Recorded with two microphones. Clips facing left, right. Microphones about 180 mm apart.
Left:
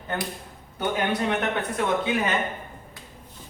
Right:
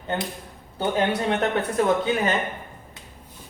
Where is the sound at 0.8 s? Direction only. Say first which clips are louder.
Right 2 dB; 30° right (ahead or behind).